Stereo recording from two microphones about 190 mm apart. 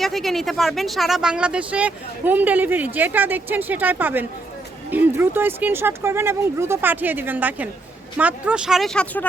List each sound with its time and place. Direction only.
0.0 s speech: centre (ahead or behind)